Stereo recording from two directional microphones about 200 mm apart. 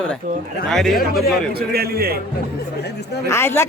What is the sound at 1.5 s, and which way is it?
Speech, 50° right (ahead or behind).